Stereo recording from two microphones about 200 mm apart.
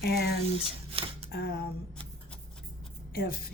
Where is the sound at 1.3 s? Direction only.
50° left (ahead or behind).